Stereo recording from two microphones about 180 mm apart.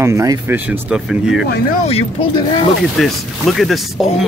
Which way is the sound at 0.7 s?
5° right (ahead or behind).